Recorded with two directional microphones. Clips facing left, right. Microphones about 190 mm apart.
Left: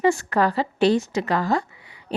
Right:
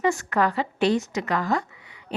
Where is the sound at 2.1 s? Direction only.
35° left (ahead or behind).